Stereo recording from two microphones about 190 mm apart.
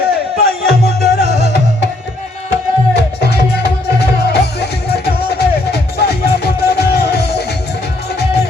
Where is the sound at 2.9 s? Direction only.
60° left (ahead or behind).